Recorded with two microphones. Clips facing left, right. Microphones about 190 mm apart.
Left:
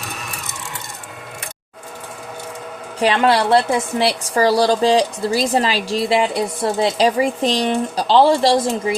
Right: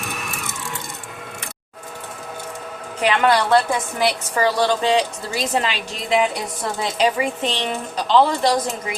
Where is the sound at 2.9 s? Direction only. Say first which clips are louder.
Left 2 dB; 30° left (ahead or behind).